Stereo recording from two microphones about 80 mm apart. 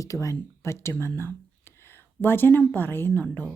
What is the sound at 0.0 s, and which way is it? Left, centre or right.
A woman's voice, left.